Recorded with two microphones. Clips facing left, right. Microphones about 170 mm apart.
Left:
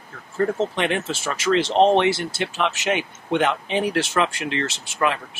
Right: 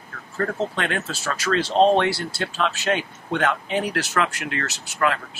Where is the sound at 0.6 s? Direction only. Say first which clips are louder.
Left 3 dB; 20° left (ahead or behind).